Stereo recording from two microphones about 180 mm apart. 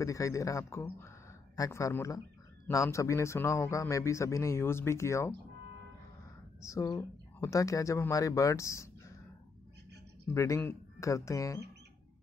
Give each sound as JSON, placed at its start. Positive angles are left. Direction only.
{"t": 0.0, "sound": "a man's voice", "side_deg": 15}
{"t": 6.6, "sound": "speech", "side_deg": 15}
{"t": 10.3, "sound": "a man's voice", "side_deg": 15}